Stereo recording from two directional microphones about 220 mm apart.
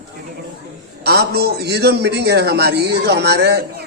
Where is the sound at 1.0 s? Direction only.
45° right (ahead or behind).